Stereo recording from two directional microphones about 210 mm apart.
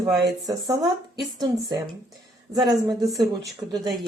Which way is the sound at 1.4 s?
20° right (ahead or behind).